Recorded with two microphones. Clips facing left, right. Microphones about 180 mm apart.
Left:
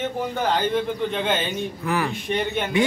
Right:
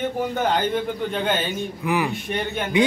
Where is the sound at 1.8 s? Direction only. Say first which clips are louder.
Right 2 dB; 15° right (ahead or behind).